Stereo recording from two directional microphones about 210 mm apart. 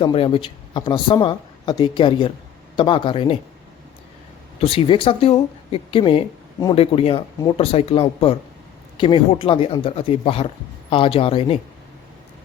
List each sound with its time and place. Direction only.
0.0 s speech: 25° left (ahead or behind)
4.6 s speech: 25° left (ahead or behind)